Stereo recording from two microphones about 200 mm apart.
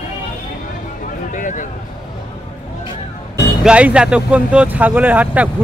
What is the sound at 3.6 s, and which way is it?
Speech, 5° right (ahead or behind).